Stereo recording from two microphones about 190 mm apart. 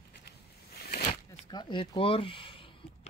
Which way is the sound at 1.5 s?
25° left (ahead or behind).